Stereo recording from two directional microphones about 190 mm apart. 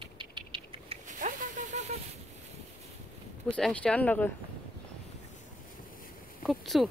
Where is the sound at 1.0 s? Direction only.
45° right (ahead or behind).